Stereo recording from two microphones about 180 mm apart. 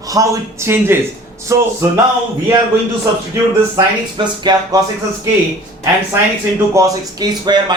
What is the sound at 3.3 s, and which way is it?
Speech, 20° right (ahead or behind).